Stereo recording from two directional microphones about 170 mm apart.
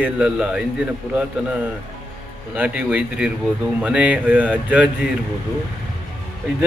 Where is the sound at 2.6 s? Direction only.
5° right (ahead or behind).